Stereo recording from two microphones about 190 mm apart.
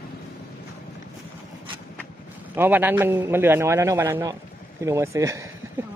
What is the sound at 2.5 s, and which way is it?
A man's voice, 10° right (ahead or behind).